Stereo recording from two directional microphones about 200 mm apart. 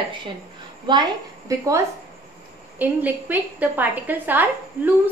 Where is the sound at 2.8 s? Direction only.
10° right (ahead or behind).